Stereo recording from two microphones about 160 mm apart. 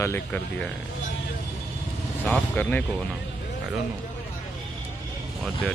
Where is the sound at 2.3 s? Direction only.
10° left (ahead or behind).